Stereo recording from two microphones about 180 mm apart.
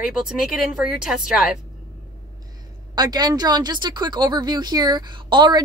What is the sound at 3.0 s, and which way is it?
Speech, 20° right (ahead or behind).